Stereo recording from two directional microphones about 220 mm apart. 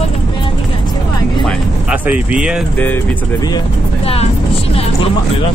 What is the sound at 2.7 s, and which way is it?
Speech, 10° left (ahead or behind).